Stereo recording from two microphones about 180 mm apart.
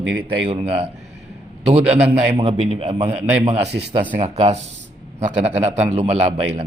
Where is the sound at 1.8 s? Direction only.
5° right (ahead or behind).